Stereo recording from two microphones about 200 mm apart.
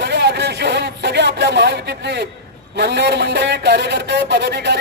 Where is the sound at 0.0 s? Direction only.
55° right (ahead or behind).